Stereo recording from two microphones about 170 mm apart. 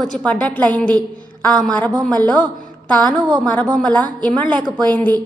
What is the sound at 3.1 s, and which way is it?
Speech, 25° right (ahead or behind).